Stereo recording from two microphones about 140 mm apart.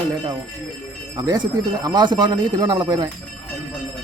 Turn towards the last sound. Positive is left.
turn(degrees=-30)  # may be behind; listen again after turning